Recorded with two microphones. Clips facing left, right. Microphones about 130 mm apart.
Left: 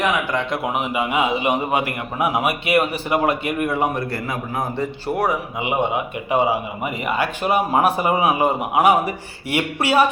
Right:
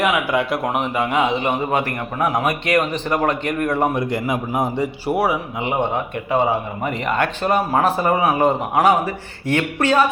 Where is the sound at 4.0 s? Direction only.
15° right (ahead or behind).